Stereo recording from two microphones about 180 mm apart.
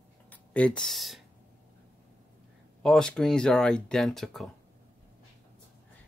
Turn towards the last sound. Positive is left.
turn(degrees=0)  # may be behind; listen again after turning